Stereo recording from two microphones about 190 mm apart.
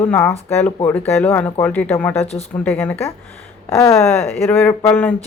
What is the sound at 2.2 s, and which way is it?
Speech, 35° left (ahead or behind).